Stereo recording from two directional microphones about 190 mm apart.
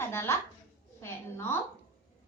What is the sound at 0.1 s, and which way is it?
A child's voice, 15° left (ahead or behind).